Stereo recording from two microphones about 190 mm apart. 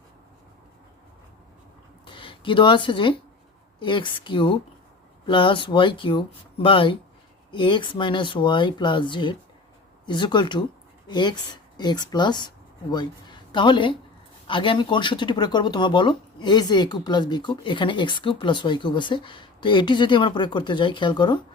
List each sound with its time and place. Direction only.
2.0 s speech: 25° left (ahead or behind)